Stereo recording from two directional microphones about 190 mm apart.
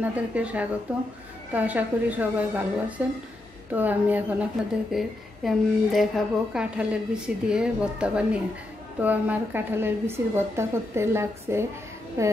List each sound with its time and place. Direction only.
0.0 s a woman's voice: 5° right (ahead or behind)